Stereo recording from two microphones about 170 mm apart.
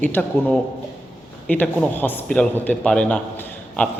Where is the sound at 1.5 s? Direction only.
10° left (ahead or behind).